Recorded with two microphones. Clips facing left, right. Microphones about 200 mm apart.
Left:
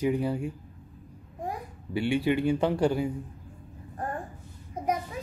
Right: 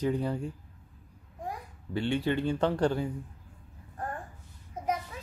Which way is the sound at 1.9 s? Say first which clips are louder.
Left 3 dB; 10° left (ahead or behind).